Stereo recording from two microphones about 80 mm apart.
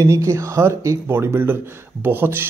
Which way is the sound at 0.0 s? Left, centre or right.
Right.